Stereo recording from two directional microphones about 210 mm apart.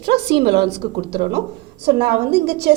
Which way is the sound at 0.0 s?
50° right (ahead or behind).